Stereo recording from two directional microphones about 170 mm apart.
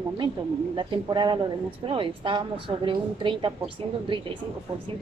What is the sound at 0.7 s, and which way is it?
A woman's voice, 30° right (ahead or behind).